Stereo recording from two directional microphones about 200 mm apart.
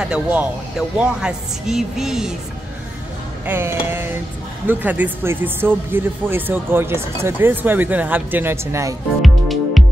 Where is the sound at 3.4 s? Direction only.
10° right (ahead or behind).